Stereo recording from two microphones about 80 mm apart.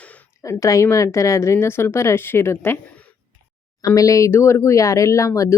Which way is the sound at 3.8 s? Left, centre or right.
Left.